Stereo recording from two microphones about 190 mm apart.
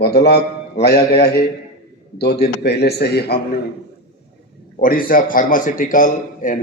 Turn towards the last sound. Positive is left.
turn(degrees=45)  # may be behind; listen again after turning